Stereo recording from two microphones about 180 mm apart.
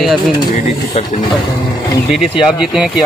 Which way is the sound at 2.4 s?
5° right (ahead or behind).